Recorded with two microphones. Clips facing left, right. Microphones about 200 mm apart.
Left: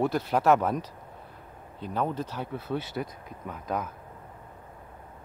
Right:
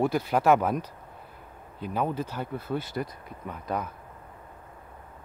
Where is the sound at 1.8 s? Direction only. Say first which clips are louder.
Right 1 dB; 5° right (ahead or behind).